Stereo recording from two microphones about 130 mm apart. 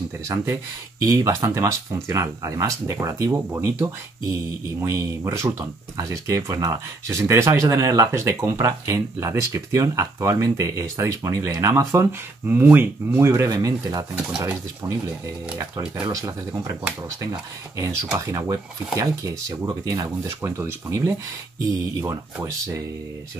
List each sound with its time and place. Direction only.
0.3 s speech: 25° right (ahead or behind)
16.1 s speech: 25° right (ahead or behind)